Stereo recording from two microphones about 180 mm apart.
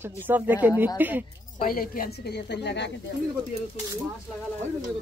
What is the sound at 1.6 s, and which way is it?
A woman's voice, 55° left (ahead or behind).